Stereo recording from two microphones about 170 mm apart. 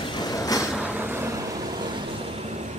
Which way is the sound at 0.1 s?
25° left (ahead or behind).